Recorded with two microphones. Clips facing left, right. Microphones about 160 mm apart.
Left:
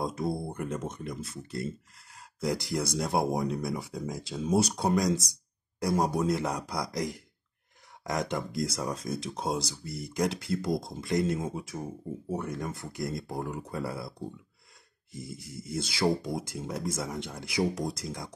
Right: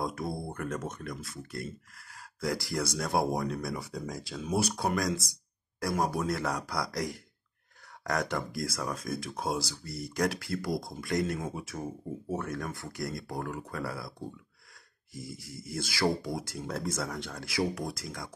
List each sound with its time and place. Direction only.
0.0 s speech: 25° left (ahead or behind)
15.1 s speech: 20° left (ahead or behind)